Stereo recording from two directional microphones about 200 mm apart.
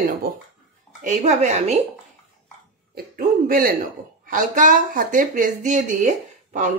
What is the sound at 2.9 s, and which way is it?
A woman's voice, 45° right (ahead or behind).